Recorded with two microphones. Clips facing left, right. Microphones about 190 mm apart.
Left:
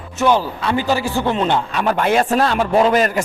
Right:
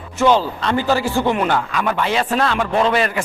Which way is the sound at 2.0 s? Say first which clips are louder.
Left 5 dB; 50° left (ahead or behind).